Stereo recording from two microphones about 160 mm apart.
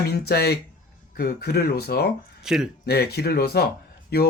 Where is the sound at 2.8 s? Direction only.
90° left.